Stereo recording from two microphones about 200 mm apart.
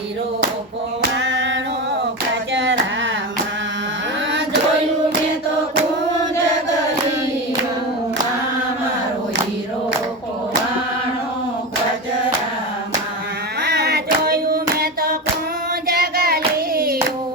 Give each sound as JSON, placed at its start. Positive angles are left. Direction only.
{"t": 1.1, "sound": "female singing", "side_deg": -65}
{"t": 2.5, "sound": "a sound", "side_deg": -65}
{"t": 13.6, "sound": "hands", "side_deg": -55}
{"t": 15.9, "sound": "music", "side_deg": -50}
{"t": 16.7, "sound": "clapping", "side_deg": -50}